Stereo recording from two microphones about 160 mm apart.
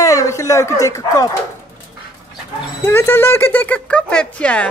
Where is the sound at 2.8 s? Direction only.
15° left (ahead or behind).